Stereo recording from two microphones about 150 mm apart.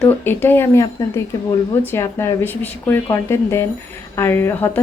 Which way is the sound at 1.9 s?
20° left (ahead or behind).